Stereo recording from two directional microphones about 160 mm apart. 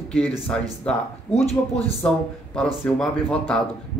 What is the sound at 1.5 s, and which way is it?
Speech, 40° left (ahead or behind).